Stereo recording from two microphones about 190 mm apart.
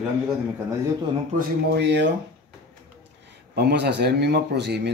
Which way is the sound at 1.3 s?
65° right (ahead or behind).